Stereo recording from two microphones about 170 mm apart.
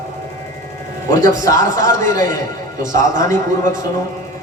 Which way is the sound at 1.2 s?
50° right (ahead or behind).